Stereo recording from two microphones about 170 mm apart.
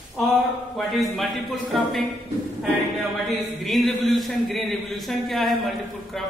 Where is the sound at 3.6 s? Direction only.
Centre (ahead or behind).